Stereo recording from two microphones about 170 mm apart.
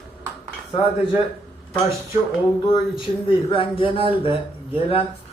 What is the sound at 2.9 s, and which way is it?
Speech, 30° left (ahead or behind).